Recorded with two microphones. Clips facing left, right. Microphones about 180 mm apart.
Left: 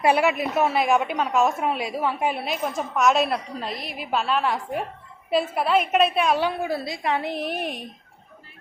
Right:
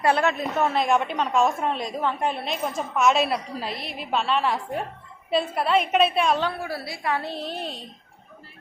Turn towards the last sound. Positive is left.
turn(degrees=15)  # may be behind; listen again after turning